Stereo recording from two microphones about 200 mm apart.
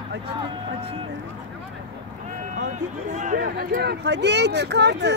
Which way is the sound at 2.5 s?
40° right (ahead or behind).